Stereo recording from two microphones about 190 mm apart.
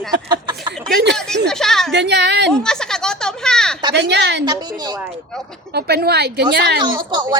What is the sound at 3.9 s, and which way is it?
Speech, 65° right (ahead or behind).